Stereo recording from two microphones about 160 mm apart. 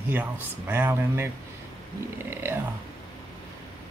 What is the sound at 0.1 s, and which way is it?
Speech, 10° right (ahead or behind).